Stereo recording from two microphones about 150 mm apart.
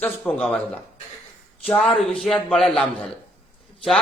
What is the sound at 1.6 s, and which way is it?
A man's voice, 10° left (ahead or behind).